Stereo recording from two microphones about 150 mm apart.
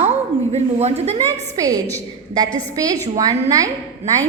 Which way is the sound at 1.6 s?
25° right (ahead or behind).